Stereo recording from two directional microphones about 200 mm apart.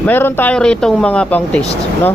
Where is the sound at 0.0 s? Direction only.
10° left (ahead or behind).